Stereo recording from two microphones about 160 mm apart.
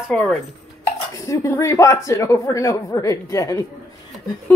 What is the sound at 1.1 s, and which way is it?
Speech, 20° left (ahead or behind).